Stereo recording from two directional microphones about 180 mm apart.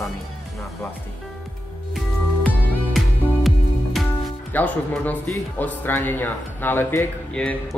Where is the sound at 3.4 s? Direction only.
Centre (ahead or behind).